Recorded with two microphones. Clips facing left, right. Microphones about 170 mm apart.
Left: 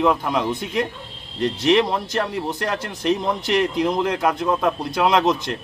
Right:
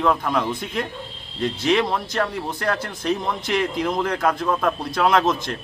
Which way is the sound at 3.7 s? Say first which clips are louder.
Left 2 dB; centre (ahead or behind).